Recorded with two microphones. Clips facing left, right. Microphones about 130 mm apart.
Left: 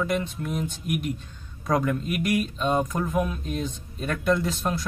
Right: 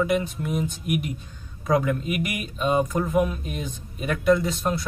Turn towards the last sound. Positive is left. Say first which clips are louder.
# right 2 dB
turn(degrees=0)  # may be behind; listen again after turning